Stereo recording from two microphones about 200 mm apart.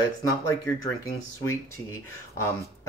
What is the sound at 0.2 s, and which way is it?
Speech, 15° left (ahead or behind).